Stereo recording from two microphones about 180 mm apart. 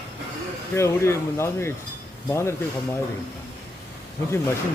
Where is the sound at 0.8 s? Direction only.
15° left (ahead or behind).